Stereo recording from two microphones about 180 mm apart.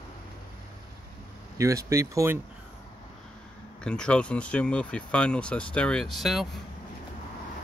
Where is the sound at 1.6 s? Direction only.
15° right (ahead or behind).